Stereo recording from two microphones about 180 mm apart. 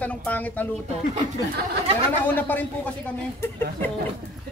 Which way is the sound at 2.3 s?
10° left (ahead or behind).